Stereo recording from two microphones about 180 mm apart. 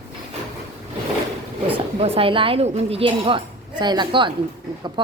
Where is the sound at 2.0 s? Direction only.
30° right (ahead or behind).